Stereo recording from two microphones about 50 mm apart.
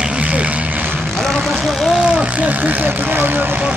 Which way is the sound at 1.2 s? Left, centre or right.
Centre.